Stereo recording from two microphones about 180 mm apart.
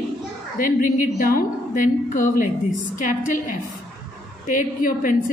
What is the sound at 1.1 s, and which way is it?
A woman's voice, 55° left (ahead or behind).